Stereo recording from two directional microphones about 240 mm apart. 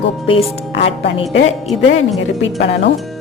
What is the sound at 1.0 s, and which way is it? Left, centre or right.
Speech, left.